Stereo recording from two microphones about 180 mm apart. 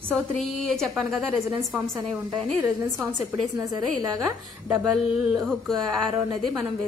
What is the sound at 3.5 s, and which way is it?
Speech, 20° right (ahead or behind).